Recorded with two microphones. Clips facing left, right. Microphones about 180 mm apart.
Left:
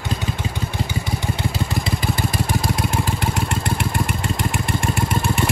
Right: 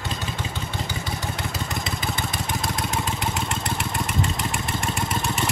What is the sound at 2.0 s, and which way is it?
Vehicle, centre (ahead or behind).